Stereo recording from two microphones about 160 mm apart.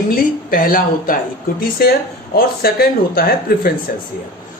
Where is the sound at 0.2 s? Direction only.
65° left (ahead or behind).